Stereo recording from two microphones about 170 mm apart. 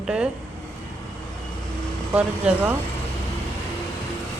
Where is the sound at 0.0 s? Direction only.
5° right (ahead or behind).